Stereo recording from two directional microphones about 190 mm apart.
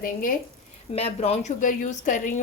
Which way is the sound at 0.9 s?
35° left (ahead or behind).